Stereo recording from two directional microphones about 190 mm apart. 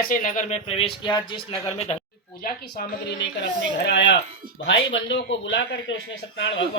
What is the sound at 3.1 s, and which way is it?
A man's voice, 65° left (ahead or behind).